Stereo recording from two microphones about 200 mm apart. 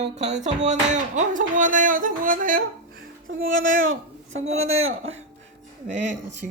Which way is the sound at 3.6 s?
75° right (ahead or behind).